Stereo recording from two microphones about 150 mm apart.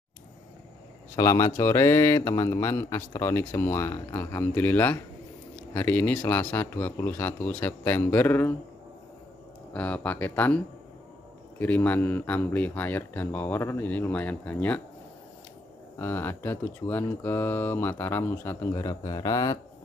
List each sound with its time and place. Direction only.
1.1 s speech: 20° left (ahead or behind)
9.7 s speech: 10° left (ahead or behind)
16.0 s speech: 15° left (ahead or behind)